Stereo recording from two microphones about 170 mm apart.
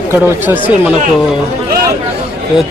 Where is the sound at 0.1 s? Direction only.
10° right (ahead or behind).